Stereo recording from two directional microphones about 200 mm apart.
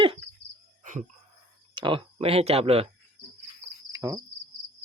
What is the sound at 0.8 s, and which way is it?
Cricket, 40° right (ahead or behind).